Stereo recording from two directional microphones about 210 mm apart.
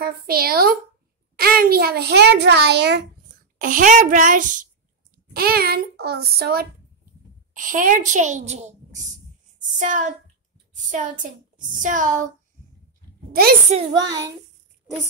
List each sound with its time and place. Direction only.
0.0 s a child's voice: 45° right (ahead or behind)
3.5 s a woman's voice: 40° right (ahead or behind)
13.3 s a child's voice: 45° right (ahead or behind)
13.7 s a child's voice: 20° right (ahead or behind)